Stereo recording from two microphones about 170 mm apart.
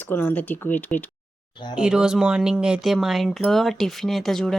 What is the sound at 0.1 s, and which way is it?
Speech, 10° left (ahead or behind).